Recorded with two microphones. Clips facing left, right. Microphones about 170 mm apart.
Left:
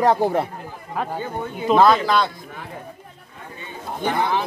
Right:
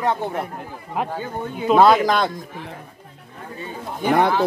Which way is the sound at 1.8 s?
10° right (ahead or behind).